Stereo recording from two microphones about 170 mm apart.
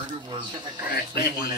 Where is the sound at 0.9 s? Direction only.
65° left (ahead or behind).